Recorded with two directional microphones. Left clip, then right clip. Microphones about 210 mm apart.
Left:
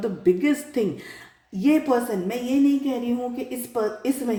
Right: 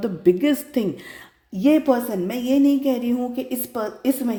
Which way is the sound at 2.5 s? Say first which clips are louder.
Right 4 dB; 50° right (ahead or behind).